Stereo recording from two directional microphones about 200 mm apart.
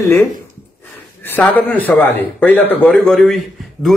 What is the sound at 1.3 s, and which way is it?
A man's voice, 10° left (ahead or behind).